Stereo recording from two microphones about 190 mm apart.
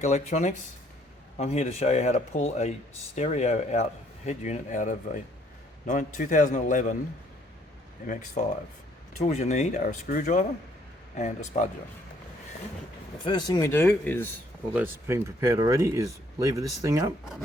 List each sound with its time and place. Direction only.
0.0 s speech: 40° left (ahead or behind)
8.0 s speech: 40° left (ahead or behind)
13.2 s speech: 20° left (ahead or behind)
14.7 s speech: 10° right (ahead or behind)